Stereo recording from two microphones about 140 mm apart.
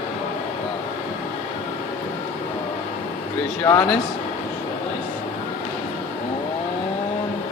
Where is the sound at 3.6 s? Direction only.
25° left (ahead or behind).